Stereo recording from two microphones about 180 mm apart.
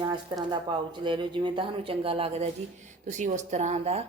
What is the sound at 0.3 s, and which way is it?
Speech, 25° right (ahead or behind).